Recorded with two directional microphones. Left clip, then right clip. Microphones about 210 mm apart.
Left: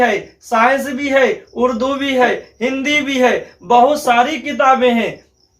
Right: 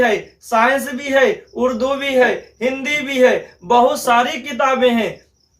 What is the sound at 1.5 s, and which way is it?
Speech, 20° left (ahead or behind).